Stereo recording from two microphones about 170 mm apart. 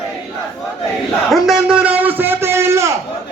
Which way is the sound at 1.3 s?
Centre (ahead or behind).